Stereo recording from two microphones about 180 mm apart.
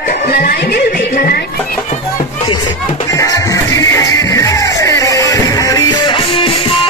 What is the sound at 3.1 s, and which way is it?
Music, 20° left (ahead or behind).